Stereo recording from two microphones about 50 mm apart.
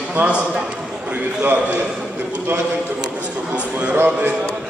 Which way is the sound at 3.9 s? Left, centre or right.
Right.